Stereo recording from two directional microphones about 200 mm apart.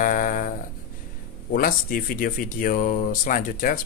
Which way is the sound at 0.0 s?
40° left (ahead or behind).